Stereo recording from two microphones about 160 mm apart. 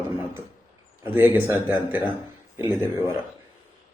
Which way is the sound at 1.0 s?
15° right (ahead or behind).